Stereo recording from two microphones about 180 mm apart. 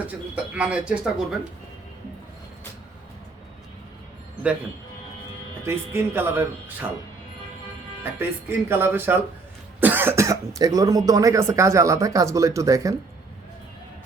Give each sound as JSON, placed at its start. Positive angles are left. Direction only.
{"t": 0.1, "sound": "speech", "side_deg": -5}
{"t": 5.6, "sound": "speech", "side_deg": -10}
{"t": 8.2, "sound": "speech", "side_deg": -10}